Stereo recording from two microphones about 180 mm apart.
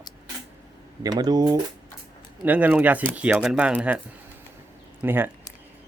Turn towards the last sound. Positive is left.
turn(degrees=-10)  # may be behind; listen again after turning